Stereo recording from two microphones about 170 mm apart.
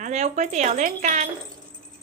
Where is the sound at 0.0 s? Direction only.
45° right (ahead or behind).